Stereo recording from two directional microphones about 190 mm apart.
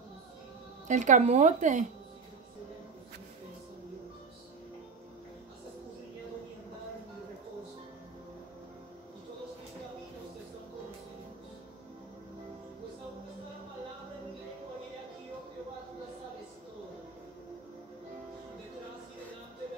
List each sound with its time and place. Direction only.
0.8 s a woman's voice: 40° right (ahead or behind)